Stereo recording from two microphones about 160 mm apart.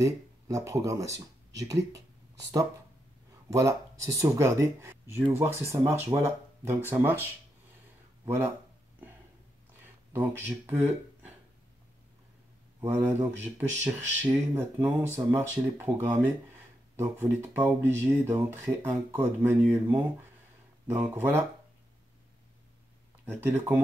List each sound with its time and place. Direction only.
0.0 s speech: 20° right (ahead or behind)
3.4 s speech: 20° right (ahead or behind)
10.1 s speech: 10° right (ahead or behind)
12.8 s speech: 15° right (ahead or behind)
23.2 s speech: 15° right (ahead or behind)